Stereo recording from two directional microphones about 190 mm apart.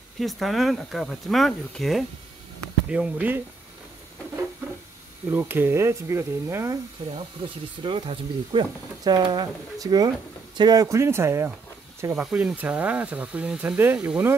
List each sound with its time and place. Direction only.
0.2 s speech: centre (ahead or behind)
5.3 s speech: 10° right (ahead or behind)
7.2 s speech: 25° right (ahead or behind); by 14.3 s 5° right (ahead or behind)